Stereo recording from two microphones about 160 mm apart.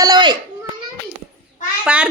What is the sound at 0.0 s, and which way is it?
Children playing, 25° right (ahead or behind).